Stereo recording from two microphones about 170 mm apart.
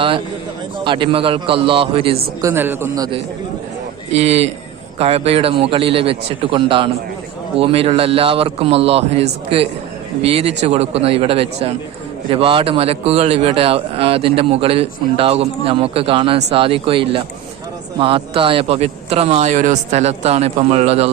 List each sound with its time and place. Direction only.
0.9 s speech: 30° right (ahead or behind)
2.4 s a man's voice: 15° right (ahead or behind)
4.1 s speech: 40° right (ahead or behind)